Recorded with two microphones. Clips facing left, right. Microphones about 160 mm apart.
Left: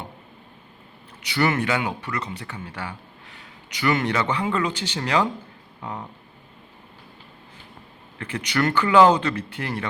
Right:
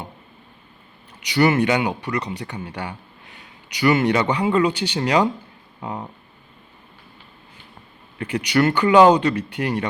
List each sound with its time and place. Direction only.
1.2 s speech: 15° right (ahead or behind)
8.2 s speech: 15° right (ahead or behind)